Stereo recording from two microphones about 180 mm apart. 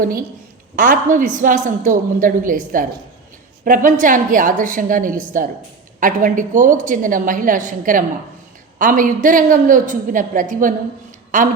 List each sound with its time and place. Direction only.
0.8 s a woman's voice: 45° right (ahead or behind)